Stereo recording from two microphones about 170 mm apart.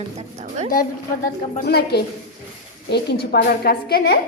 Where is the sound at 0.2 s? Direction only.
40° right (ahead or behind).